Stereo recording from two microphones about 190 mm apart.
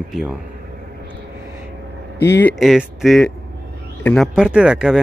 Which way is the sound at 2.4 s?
Centre (ahead or behind).